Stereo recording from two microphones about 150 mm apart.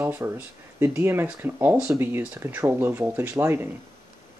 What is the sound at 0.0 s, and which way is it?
Speech, 15° right (ahead or behind).